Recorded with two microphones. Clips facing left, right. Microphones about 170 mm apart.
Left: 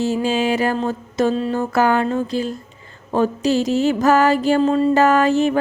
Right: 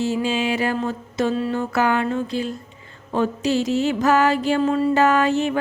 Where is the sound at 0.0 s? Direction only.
40° left (ahead or behind).